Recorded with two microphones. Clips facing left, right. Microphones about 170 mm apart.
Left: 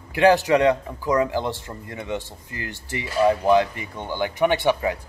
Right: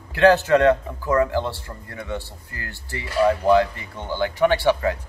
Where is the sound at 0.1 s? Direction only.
15° left (ahead or behind).